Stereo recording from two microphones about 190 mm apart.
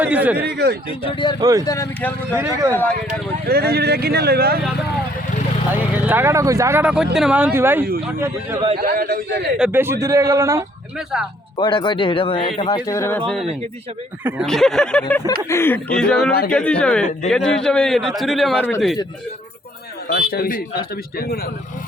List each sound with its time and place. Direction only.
0.0 s speech: 10° right (ahead or behind)
0.3 s speech: 60° right (ahead or behind)
1.0 s speech: 25° left (ahead or behind)
1.4 s speech: 20° right (ahead or behind)
1.6 s speech: 15° left (ahead or behind)
2.3 s speech: 15° right (ahead or behind)
2.7 s speech: 10° left (ahead or behind)
3.4 s speech: 55° right (ahead or behind)
5.7 s speech: 10° right (ahead or behind)
8.8 s a man's voice: 50° right (ahead or behind)
9.6 s speech: 10° right (ahead or behind)
10.9 s a man's voice: 5° right (ahead or behind)
11.5 s a man's voice: 25° left (ahead or behind); by 18.6 s centre (ahead or behind)
20.1 s a man's voice: 55° left (ahead or behind)